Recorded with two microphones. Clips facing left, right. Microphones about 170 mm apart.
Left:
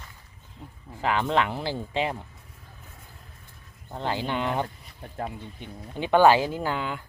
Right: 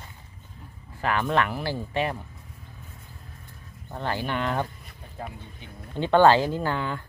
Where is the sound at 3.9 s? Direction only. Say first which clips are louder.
Even; 15° left (ahead or behind).